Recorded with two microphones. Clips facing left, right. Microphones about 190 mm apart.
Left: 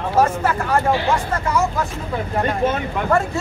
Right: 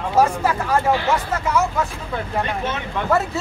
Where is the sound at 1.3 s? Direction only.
5° right (ahead or behind).